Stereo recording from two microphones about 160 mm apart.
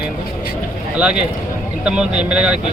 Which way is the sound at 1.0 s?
5° right (ahead or behind).